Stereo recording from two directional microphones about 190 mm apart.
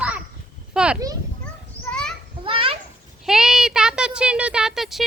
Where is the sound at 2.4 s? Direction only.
30° right (ahead or behind).